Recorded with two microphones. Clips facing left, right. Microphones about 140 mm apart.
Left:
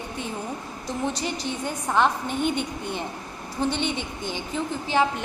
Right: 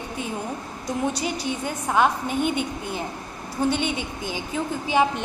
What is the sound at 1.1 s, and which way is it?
A woman's voice, 10° right (ahead or behind).